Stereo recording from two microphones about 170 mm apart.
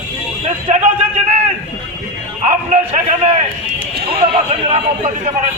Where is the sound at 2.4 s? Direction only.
45° right (ahead or behind).